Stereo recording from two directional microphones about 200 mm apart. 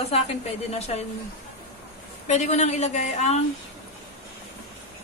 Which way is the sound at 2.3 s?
35° left (ahead or behind).